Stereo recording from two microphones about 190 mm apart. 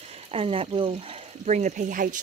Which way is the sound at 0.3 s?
30° right (ahead or behind).